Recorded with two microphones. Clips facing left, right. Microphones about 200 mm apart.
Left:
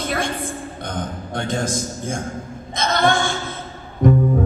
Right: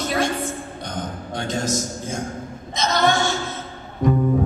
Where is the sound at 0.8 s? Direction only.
55° left (ahead or behind).